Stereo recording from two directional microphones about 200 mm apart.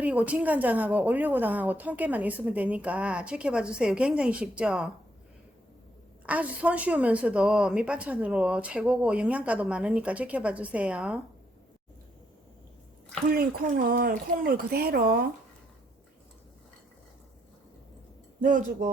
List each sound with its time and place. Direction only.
0.0 s a woman's voice: 5° right (ahead or behind)
6.2 s a woman's voice: 5° right (ahead or behind)
13.3 s speech: 50° right (ahead or behind)
18.3 s a sound: 40° right (ahead or behind)